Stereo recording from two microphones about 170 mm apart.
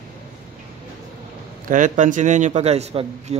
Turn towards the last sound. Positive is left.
turn(degrees=-40)  # may be behind; listen again after turning